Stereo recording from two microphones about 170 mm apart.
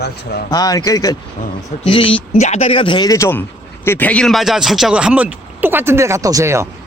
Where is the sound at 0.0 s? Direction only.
70° left (ahead or behind).